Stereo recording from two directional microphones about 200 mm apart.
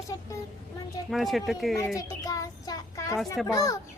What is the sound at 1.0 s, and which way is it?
Speech, centre (ahead or behind).